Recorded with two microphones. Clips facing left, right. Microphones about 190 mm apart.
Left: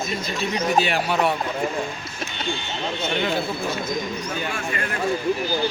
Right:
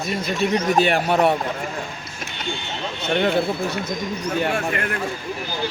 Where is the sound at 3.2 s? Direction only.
60° right (ahead or behind).